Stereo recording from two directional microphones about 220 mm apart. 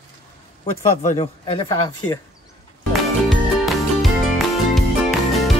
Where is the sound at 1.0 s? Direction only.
25° left (ahead or behind).